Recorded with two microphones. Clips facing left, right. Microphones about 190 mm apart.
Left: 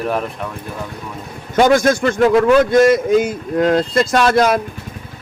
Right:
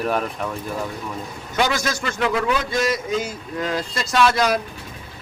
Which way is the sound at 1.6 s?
50° left (ahead or behind).